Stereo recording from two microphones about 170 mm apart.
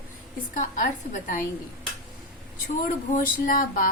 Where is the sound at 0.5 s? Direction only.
50° left (ahead or behind).